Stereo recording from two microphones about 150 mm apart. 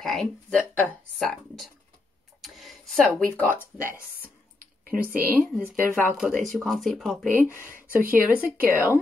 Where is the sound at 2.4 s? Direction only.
Centre (ahead or behind).